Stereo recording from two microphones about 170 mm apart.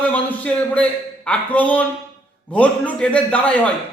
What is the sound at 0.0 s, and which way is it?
A man's voice, 10° left (ahead or behind).